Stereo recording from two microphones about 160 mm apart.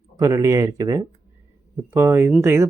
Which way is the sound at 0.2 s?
20° right (ahead or behind).